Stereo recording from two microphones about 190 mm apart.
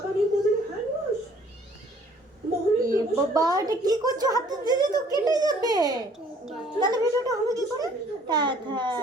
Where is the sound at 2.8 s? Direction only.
20° right (ahead or behind).